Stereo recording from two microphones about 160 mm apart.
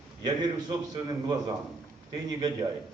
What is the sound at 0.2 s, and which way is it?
Speech, 25° right (ahead or behind).